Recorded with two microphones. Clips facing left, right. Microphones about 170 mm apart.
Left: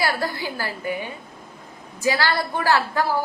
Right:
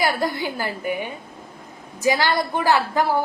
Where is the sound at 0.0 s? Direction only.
20° right (ahead or behind).